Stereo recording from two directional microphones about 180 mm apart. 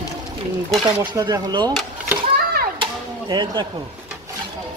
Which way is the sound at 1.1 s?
20° right (ahead or behind).